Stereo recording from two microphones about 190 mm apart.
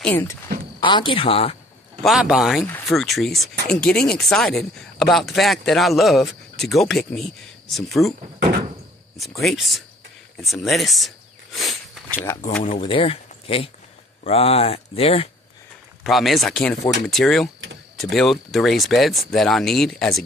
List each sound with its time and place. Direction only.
0.0 s speech: 10° left (ahead or behind)
0.7 s speech: 25° left (ahead or behind)
2.0 s speech: centre (ahead or behind)
8.4 s door: 55° right (ahead or behind)
9.1 s speech: centre (ahead or behind)
10.4 s a sound: centre (ahead or behind)
12.8 s speech: 30° left (ahead or behind)
16.0 s speech: centre (ahead or behind)